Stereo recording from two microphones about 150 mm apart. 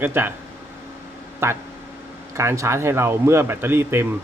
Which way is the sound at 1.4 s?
15° right (ahead or behind).